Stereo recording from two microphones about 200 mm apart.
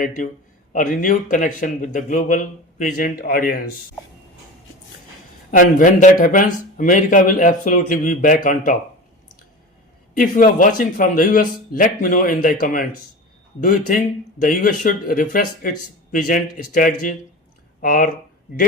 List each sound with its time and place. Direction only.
0.7 s speech: 40° left (ahead or behind)
5.5 s speech: 40° left (ahead or behind)
10.2 s speech: 40° left (ahead or behind)